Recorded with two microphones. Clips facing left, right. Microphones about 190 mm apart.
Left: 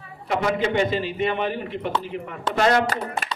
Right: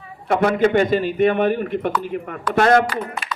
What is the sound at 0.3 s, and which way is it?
A man's voice, 55° right (ahead or behind).